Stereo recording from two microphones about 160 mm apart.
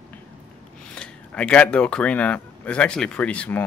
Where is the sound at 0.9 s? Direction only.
5° left (ahead or behind).